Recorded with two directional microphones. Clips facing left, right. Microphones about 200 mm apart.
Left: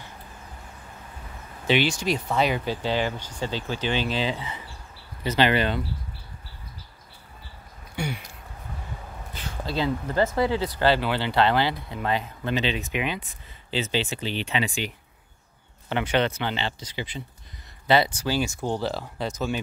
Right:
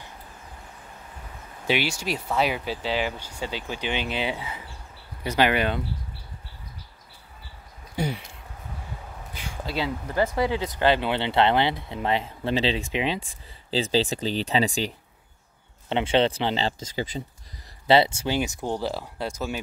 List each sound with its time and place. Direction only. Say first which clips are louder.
1.7 s speech: left 3 dB; 10° right (ahead or behind)
7.9 s a sound: right 3 dB; 35° right (ahead or behind)
9.3 s speech: left 1 dB; 10° right (ahead or behind); by 14.9 s 35° right (ahead or behind)
15.9 s speech: right 2 dB; 25° right (ahead or behind)
17.8 s speech: right 2 dB; 25° right (ahead or behind); by 19.6 s 10° right (ahead or behind)